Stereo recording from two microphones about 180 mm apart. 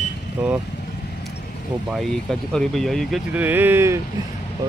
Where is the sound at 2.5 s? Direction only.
Centre (ahead or behind).